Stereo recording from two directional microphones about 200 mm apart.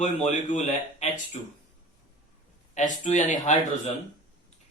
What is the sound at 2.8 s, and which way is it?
Speech, 40° left (ahead or behind).